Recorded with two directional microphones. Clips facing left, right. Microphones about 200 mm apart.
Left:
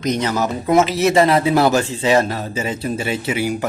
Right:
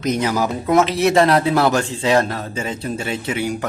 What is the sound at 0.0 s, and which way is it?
Speech, 5° right (ahead or behind).